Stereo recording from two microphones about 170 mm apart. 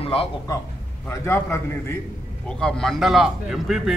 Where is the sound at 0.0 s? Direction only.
35° left (ahead or behind).